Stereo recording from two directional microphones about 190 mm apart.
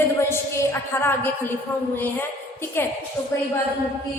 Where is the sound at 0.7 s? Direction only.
10° left (ahead or behind).